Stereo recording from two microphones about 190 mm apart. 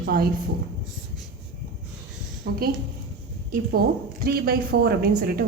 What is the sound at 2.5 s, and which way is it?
Speech, 55° right (ahead or behind).